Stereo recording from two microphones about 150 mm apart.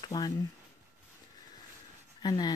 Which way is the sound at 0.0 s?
25° left (ahead or behind).